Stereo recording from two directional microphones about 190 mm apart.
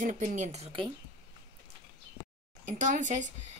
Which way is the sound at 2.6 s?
40° right (ahead or behind).